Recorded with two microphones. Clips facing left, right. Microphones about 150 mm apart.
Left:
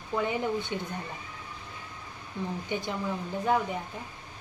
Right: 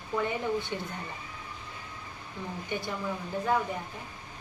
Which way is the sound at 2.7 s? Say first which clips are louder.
Even; 20° left (ahead or behind).